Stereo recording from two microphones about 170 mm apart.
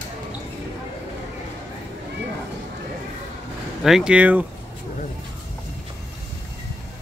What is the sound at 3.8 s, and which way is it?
Speech, 5° right (ahead or behind).